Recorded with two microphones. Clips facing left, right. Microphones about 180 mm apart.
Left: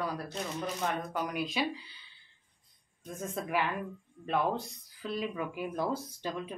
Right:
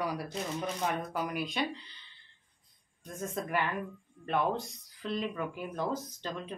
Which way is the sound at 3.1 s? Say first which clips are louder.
Even; centre (ahead or behind).